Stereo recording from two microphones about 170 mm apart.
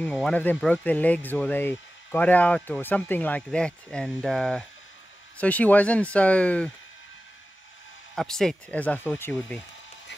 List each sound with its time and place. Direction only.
0.0 s speech: 5° left (ahead or behind)
8.2 s speech: 5° left (ahead or behind)